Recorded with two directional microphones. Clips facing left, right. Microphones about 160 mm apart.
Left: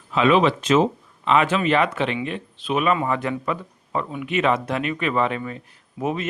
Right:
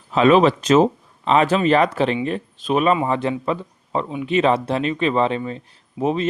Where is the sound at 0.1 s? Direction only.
40° right (ahead or behind).